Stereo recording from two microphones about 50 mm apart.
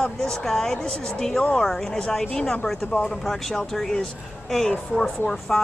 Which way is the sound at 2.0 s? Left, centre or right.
Centre.